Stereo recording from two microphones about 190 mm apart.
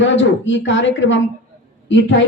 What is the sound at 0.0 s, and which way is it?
A woman's voice, 75° left (ahead or behind).